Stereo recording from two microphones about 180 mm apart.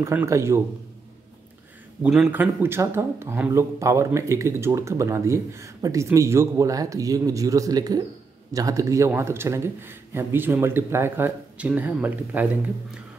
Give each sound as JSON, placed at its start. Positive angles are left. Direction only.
{"t": 0.0, "sound": "speech", "side_deg": -15}
{"t": 2.0, "sound": "speech", "side_deg": -5}